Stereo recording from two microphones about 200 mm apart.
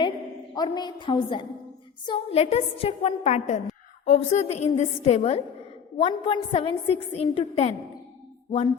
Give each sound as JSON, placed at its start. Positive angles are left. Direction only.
{"t": 0.5, "sound": "a woman's voice", "side_deg": 20}